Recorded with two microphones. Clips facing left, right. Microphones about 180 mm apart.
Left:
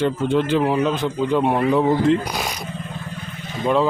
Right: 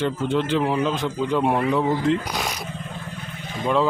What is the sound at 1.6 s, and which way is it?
Speech, 30° left (ahead or behind).